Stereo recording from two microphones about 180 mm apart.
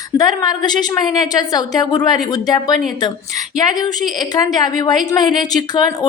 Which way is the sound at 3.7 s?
20° left (ahead or behind).